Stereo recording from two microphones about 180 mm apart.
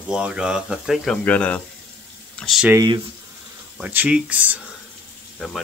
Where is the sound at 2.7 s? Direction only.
25° right (ahead or behind).